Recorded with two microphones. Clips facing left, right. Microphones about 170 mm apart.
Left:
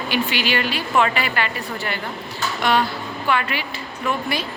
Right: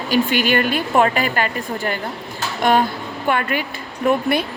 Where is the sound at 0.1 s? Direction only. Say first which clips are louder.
Right 6 dB; 50° right (ahead or behind).